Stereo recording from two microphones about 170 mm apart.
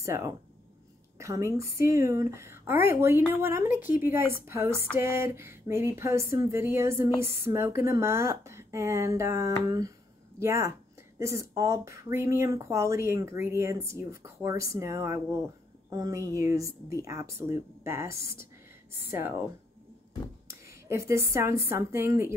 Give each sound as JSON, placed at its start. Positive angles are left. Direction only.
{"t": 0.0, "sound": "speech", "side_deg": -15}
{"t": 20.4, "sound": "a woman's voice", "side_deg": -15}